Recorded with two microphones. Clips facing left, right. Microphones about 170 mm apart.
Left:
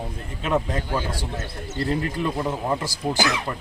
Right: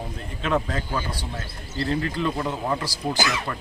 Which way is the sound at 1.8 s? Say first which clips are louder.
Even; 15° left (ahead or behind).